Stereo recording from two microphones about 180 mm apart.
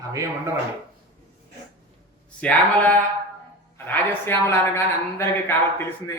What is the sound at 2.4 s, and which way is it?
A woman's voice, 5° left (ahead or behind).